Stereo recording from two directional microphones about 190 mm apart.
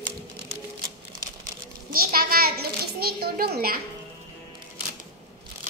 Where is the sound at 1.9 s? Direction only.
50° right (ahead or behind).